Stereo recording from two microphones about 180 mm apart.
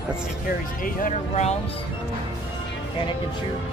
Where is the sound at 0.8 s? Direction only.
50° left (ahead or behind).